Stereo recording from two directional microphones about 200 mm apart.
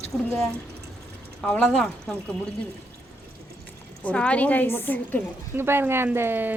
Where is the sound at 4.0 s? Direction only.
5° left (ahead or behind).